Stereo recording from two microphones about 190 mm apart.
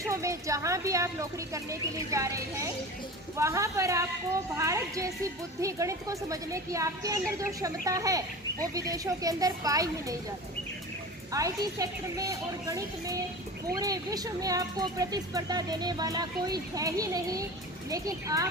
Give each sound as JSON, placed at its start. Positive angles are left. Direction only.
{"t": 0.0, "sound": "a woman's voice", "side_deg": -15}
{"t": 11.3, "sound": "a woman's voice", "side_deg": -15}